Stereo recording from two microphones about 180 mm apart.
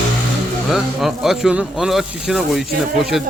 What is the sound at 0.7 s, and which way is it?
Speech, centre (ahead or behind).